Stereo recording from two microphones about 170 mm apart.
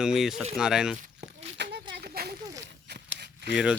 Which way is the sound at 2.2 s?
65° right (ahead or behind).